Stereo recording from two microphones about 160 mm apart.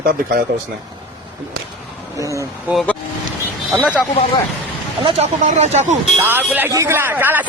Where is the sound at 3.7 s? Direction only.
5° right (ahead or behind).